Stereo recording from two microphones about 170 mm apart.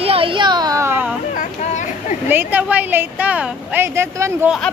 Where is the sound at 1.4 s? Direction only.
45° left (ahead or behind).